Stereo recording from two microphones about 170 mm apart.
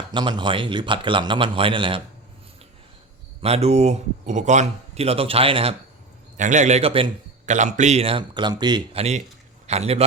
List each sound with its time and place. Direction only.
0.1 s a man's voice: 25° right (ahead or behind)
3.4 s speech: 40° right (ahead or behind)
6.3 s a man's voice: 45° right (ahead or behind)
7.5 s speech: 45° right (ahead or behind)